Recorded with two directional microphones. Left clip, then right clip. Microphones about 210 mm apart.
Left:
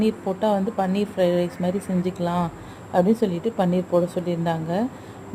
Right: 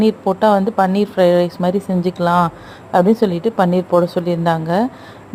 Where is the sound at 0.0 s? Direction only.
20° right (ahead or behind).